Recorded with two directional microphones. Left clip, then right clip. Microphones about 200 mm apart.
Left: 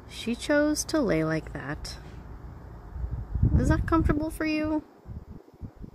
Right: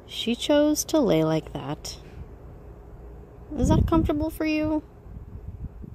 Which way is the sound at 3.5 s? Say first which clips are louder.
Right 3 dB; 15° right (ahead or behind).